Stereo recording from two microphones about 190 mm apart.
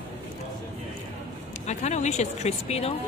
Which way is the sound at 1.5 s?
35° left (ahead or behind).